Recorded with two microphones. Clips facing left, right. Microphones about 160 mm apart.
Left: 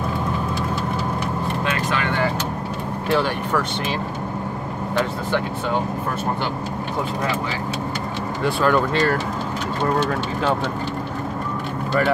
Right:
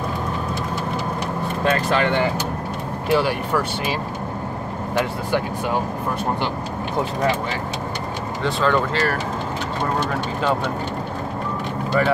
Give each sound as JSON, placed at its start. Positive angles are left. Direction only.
{"t": 1.6, "sound": "speech", "side_deg": -35}
{"t": 3.1, "sound": "speech", "side_deg": -10}
{"t": 8.5, "sound": "speech", "side_deg": 10}